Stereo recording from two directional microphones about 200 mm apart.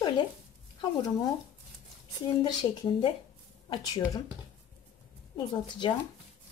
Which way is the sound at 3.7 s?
20° left (ahead or behind).